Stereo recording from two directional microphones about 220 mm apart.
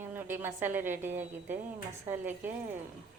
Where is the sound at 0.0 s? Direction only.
10° right (ahead or behind).